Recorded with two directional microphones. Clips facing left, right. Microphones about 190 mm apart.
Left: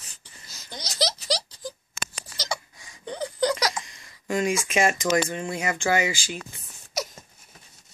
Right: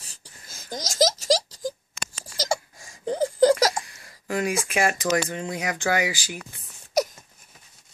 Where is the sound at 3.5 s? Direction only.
50° right (ahead or behind).